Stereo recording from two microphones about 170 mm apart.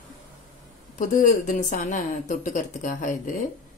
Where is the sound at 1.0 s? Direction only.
50° left (ahead or behind).